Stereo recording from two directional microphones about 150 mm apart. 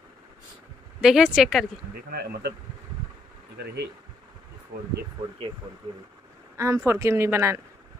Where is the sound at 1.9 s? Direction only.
90° right.